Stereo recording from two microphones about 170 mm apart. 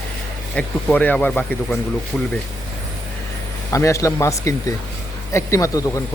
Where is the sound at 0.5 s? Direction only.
5° left (ahead or behind).